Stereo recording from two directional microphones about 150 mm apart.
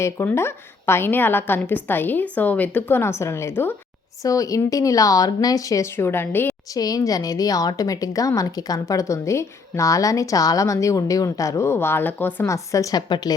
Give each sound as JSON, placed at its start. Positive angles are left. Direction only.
{"t": 0.0, "sound": "a woman's voice", "side_deg": 15}
{"t": 6.7, "sound": "a woman's voice", "side_deg": 25}